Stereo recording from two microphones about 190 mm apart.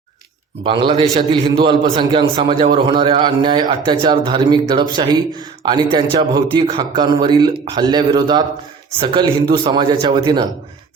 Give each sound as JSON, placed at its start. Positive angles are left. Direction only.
{"t": 0.6, "sound": "speech", "side_deg": -25}